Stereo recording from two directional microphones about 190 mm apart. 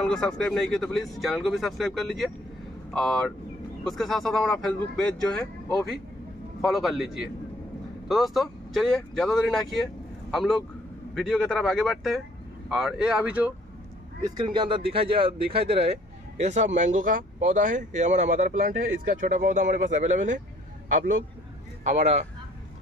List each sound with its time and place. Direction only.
0.0 s speech: 5° left (ahead or behind)
6.6 s speech: centre (ahead or behind)
14.2 s speech: 25° right (ahead or behind); by 20.4 s 40° right (ahead or behind)
21.8 s speech: 35° right (ahead or behind)